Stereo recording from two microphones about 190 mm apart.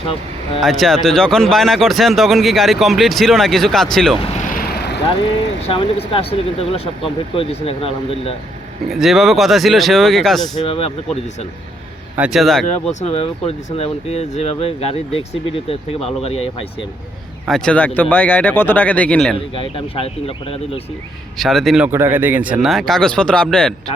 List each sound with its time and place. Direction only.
0.6 s speech: centre (ahead or behind)
4.2 s vehicle: 40° left (ahead or behind)
5.6 s speech: 30° left (ahead or behind)
8.9 s speech: centre (ahead or behind)
10.6 s speech: 30° left (ahead or behind)
12.1 s speech: 5° right (ahead or behind)
12.9 s speech: 35° left (ahead or behind)
17.5 s speech: 5° left (ahead or behind)
19.7 s speech: 30° left (ahead or behind)
21.3 s speech: centre (ahead or behind)
21.8 s speech: 10° right (ahead or behind); by 23.7 s 5° left (ahead or behind)